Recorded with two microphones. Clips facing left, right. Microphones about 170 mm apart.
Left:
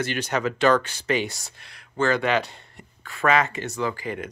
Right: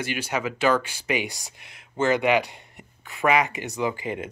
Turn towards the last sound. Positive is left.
turn(degrees=-20)  # may be behind; listen again after turning